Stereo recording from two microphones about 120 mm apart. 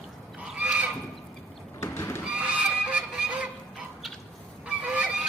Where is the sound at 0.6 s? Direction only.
10° right (ahead or behind).